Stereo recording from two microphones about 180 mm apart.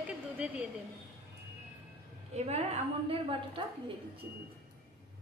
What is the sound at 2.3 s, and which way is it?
A woman's voice, 35° right (ahead or behind).